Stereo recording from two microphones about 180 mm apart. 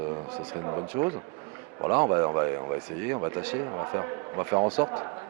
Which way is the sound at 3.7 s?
25° right (ahead or behind).